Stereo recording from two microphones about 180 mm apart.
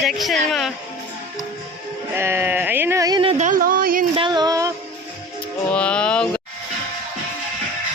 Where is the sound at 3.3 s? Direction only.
45° right (ahead or behind).